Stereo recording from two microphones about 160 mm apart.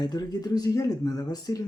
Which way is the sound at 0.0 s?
25° left (ahead or behind).